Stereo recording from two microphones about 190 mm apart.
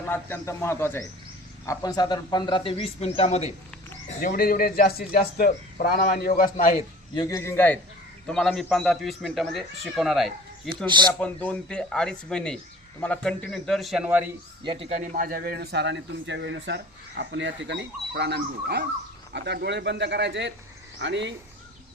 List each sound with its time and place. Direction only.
0.1 s a man's voice: 15° left (ahead or behind); by 3.5 s 35° left (ahead or behind)
4.2 s a man's voice: 50° left (ahead or behind)
7.1 s a man's voice: 20° left (ahead or behind); by 10.3 s centre (ahead or behind)
10.8 s a man's voice: 25° right (ahead or behind)
11.2 s a man's voice: 5° left (ahead or behind); by 14.3 s 10° right (ahead or behind)
14.6 s a man's voice: 25° right (ahead or behind); by 21.3 s 70° right (ahead or behind)